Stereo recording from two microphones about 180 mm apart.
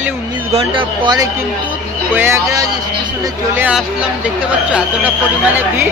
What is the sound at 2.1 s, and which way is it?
Speech, 15° right (ahead or behind).